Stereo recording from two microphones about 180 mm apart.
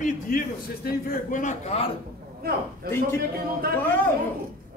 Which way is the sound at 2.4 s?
60° right (ahead or behind).